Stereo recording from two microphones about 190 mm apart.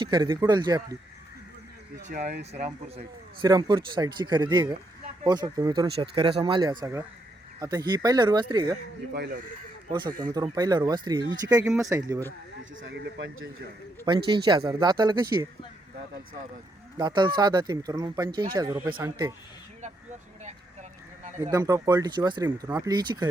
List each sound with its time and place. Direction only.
0.0 s speech: 25° right (ahead or behind)
2.0 s speech: 40° right (ahead or behind)
3.4 s speech: 25° right (ahead or behind)
9.9 s speech: 25° right (ahead or behind)
11.6 s speech: centre (ahead or behind)
11.9 s speech: 20° right (ahead or behind)
12.8 s a man's voice: 70° right (ahead or behind)
14.0 s speech: 25° right (ahead or behind)
17.0 s speech: 25° right (ahead or behind)
21.5 s speech: 20° right (ahead or behind)